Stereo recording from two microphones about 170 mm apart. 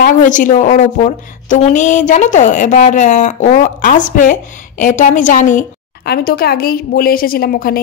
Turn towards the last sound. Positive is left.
turn(degrees=60)  # may be behind; listen again after turning